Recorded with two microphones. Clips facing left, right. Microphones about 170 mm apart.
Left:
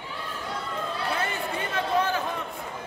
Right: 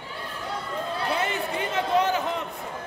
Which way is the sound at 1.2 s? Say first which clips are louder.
Right 2 dB; 20° right (ahead or behind).